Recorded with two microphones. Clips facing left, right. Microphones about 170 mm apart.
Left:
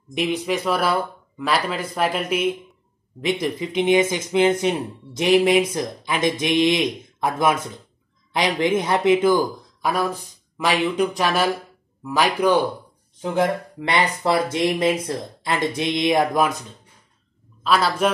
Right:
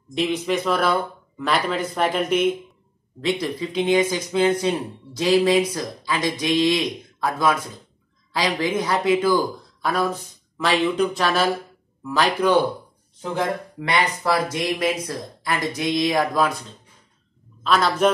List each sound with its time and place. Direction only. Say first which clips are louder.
0.1 s speech: even; 15° left (ahead or behind)
13.7 s speech: even; 25° left (ahead or behind)
17.6 s speech: right 1 dB; 5° left (ahead or behind)